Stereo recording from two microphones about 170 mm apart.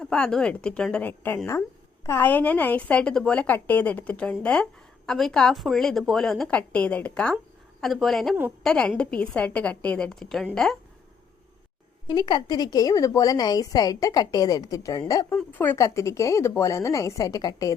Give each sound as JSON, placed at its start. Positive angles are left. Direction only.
{"t": 0.0, "sound": "a woman's voice", "side_deg": 5}
{"t": 12.0, "sound": "a woman's voice", "side_deg": 25}